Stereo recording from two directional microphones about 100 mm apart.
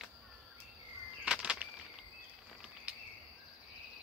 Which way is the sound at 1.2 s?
10° right (ahead or behind).